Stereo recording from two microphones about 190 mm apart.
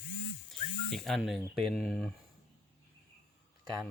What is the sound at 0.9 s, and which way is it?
Speech, centre (ahead or behind).